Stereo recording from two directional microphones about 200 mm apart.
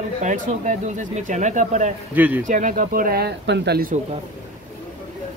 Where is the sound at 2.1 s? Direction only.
10° right (ahead or behind).